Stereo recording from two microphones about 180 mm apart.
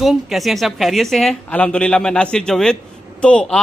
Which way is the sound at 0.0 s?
Centre (ahead or behind).